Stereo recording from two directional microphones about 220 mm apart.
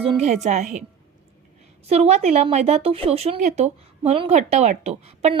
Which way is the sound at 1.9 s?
30° right (ahead or behind).